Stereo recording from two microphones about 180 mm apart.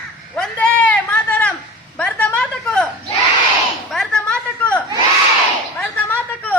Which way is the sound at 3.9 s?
5° left (ahead or behind).